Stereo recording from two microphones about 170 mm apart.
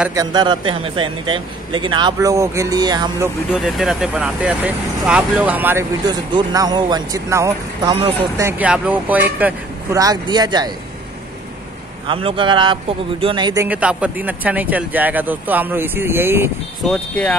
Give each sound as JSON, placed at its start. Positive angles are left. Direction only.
{"t": 0.1, "sound": "a man's voice", "side_deg": -25}
{"t": 3.5, "sound": "speech", "side_deg": 0}
{"t": 6.0, "sound": "a man's voice", "side_deg": -25}
{"t": 9.9, "sound": "a man's voice", "side_deg": -20}
{"t": 12.1, "sound": "a man's voice", "side_deg": -30}
{"t": 13.7, "sound": "speech", "side_deg": -5}
{"t": 16.9, "sound": "speech", "side_deg": 5}